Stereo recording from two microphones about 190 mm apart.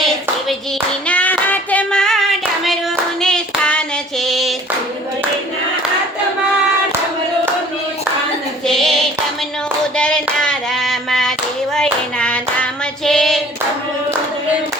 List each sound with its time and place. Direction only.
1.0 s child singing: 5° left (ahead or behind)
2.6 s hands: centre (ahead or behind)
8.6 s a sound: centre (ahead or behind)
10.0 s hands: 5° left (ahead or behind)